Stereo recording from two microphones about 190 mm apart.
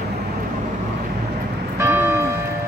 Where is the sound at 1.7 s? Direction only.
10° right (ahead or behind).